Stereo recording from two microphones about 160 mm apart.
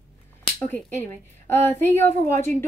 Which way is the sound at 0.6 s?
10° left (ahead or behind).